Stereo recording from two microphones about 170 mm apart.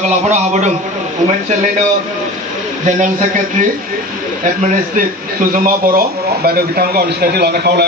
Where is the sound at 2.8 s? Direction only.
50° right (ahead or behind).